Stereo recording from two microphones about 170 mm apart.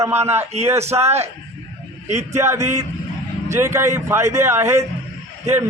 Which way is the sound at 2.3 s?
15° right (ahead or behind).